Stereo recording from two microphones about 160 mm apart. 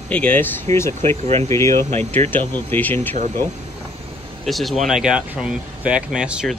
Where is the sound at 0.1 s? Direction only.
10° left (ahead or behind).